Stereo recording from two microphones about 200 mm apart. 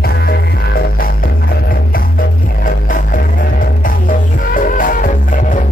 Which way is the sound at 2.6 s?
40° left (ahead or behind).